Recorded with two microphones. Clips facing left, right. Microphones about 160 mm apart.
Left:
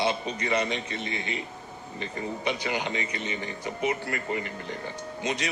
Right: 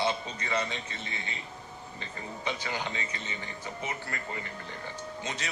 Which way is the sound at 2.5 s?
15° left (ahead or behind).